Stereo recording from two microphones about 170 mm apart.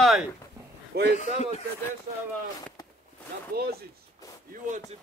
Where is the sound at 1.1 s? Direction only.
45° left (ahead or behind).